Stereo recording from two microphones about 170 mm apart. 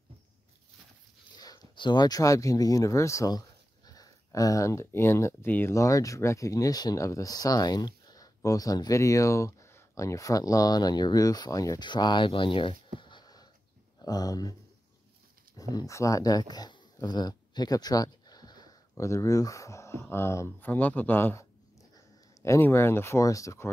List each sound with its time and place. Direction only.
1.3 s speech: 20° left (ahead or behind)
13.0 s a sound: 25° left (ahead or behind)
14.0 s speech: 20° left (ahead or behind)
15.7 s speech: 20° left (ahead or behind)